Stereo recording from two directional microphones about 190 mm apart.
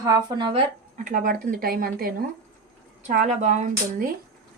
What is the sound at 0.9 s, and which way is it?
A woman's voice, 45° right (ahead or behind).